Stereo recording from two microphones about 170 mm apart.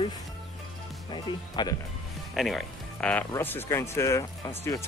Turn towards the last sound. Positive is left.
turn(degrees=20)  # may be behind; listen again after turning